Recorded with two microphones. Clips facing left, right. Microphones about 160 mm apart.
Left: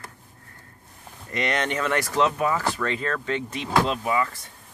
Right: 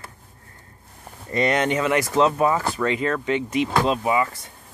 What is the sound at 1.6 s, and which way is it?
Speech, 15° right (ahead or behind).